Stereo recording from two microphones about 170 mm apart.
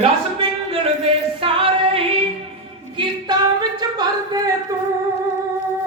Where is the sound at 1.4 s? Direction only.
30° right (ahead or behind).